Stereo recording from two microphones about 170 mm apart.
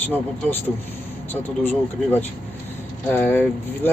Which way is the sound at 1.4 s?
10° left (ahead or behind).